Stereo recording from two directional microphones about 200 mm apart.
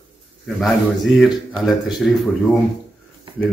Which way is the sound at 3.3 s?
25° right (ahead or behind).